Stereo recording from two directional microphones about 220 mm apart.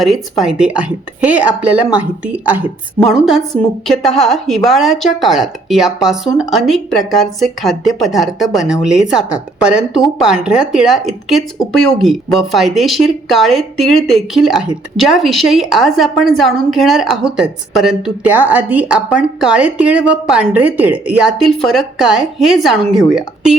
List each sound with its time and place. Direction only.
0.0 s a woman's voice: centre (ahead or behind)